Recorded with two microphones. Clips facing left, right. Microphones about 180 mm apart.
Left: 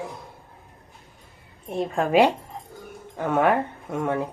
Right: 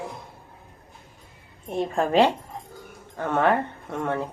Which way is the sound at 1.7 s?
Centre (ahead or behind).